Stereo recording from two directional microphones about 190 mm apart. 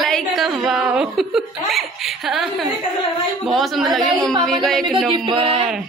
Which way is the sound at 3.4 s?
Centre (ahead or behind).